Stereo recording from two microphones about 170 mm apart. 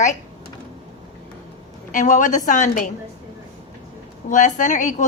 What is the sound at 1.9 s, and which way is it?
A woman's voice, 50° left (ahead or behind).